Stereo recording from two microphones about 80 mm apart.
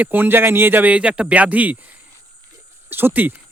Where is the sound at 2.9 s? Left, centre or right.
Right.